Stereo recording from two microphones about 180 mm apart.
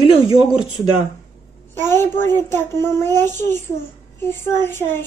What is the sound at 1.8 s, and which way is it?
Speech, 15° left (ahead or behind).